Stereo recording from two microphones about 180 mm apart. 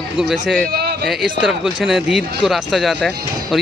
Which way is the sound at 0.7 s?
60° right (ahead or behind).